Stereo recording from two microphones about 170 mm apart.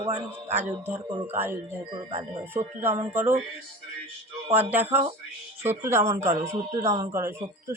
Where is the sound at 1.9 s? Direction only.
35° right (ahead or behind).